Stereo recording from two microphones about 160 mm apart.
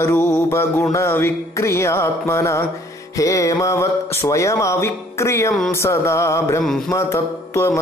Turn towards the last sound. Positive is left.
turn(degrees=15)  # may be behind; listen again after turning